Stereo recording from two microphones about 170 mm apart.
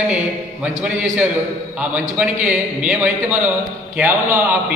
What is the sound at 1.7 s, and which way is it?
A man's voice, 5° right (ahead or behind).